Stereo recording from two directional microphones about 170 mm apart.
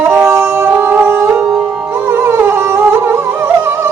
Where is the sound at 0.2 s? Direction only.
20° right (ahead or behind).